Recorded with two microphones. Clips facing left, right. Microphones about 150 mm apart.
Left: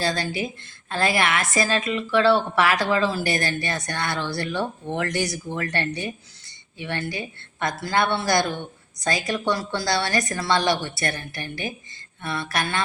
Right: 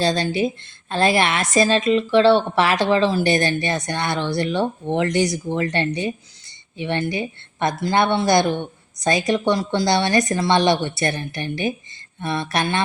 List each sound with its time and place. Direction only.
0.0 s a woman's voice: 25° right (ahead or behind)